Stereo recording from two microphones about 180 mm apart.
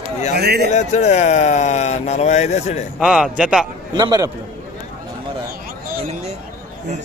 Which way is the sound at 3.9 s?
20° right (ahead or behind).